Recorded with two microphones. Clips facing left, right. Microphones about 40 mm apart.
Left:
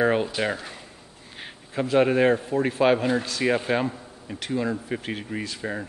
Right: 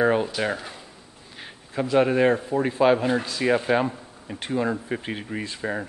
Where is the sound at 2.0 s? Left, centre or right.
Centre.